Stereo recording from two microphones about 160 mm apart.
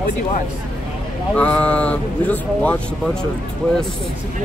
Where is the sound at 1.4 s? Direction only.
10° left (ahead or behind).